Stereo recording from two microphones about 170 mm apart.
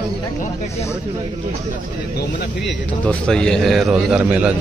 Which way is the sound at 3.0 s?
5° left (ahead or behind).